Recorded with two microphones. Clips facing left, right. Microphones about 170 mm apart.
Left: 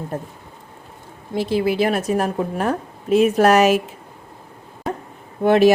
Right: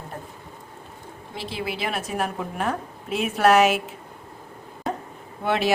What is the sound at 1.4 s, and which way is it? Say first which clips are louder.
A woman's voice: left 11 dB; 45° left (ahead or behind).